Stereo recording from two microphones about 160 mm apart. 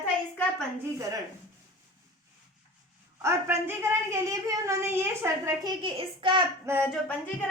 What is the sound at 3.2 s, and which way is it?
A woman's voice, 15° right (ahead or behind).